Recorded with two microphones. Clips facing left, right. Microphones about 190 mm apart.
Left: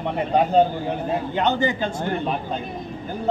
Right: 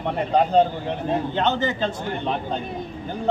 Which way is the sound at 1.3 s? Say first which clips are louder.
Left 1 dB; 10° left (ahead or behind).